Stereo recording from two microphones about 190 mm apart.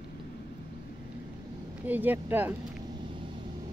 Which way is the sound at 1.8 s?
10° right (ahead or behind).